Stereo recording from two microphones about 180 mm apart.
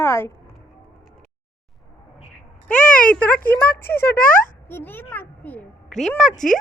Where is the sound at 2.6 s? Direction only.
10° left (ahead or behind).